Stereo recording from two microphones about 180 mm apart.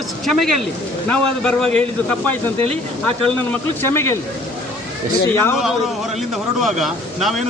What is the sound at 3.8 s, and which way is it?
Speech, 15° left (ahead or behind).